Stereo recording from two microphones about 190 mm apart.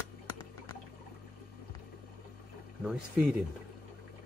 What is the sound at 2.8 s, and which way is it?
Speech, 5° right (ahead or behind).